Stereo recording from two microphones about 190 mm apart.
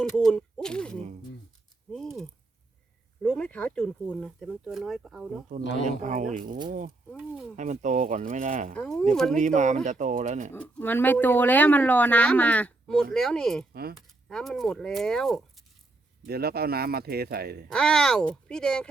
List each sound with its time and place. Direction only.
0.0 s speech: centre (ahead or behind)
6.0 s speech: 40° right (ahead or behind)
7.2 s speech: 5° right (ahead or behind)
7.5 s speech: 40° right (ahead or behind)
8.7 s speech: 5° left (ahead or behind)
9.4 s speech: 40° right (ahead or behind)
10.5 s speech: 10° left (ahead or behind)
16.2 s speech: 55° right (ahead or behind)
17.7 s speech: 5° left (ahead or behind)